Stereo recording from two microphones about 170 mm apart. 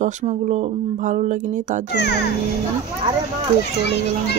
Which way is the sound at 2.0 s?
80° left.